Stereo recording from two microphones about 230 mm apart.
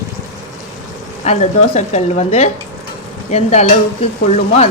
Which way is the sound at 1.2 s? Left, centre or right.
Left.